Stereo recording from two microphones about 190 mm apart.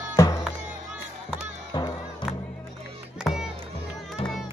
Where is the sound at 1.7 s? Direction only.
20° left (ahead or behind).